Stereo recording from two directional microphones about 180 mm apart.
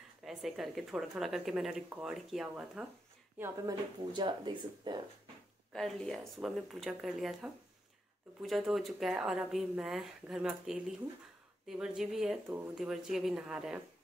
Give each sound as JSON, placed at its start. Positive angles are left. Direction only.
{"t": 0.2, "sound": "speech", "side_deg": 0}
{"t": 4.1, "sound": "speech", "side_deg": -25}
{"t": 5.7, "sound": "speech", "side_deg": 0}